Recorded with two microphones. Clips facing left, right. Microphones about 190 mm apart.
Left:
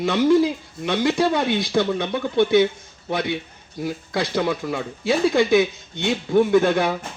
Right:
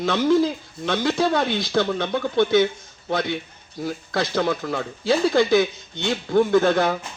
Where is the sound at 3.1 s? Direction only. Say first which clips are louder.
Even; 20° left (ahead or behind).